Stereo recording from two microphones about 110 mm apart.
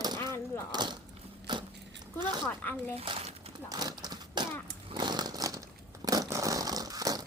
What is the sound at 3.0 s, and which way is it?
Speech, 50° right (ahead or behind).